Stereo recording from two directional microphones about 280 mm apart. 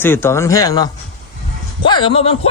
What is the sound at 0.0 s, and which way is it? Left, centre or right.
Speech, centre.